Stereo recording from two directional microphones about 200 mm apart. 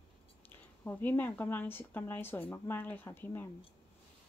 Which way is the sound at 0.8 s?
10° left (ahead or behind).